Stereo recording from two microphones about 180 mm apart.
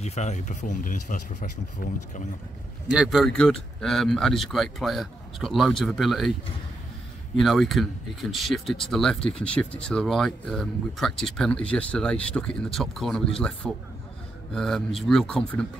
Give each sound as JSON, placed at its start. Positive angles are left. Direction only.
{"t": 0.0, "sound": "speech", "side_deg": 40}
{"t": 2.9, "sound": "speech", "side_deg": -5}
{"t": 7.3, "sound": "speech", "side_deg": 0}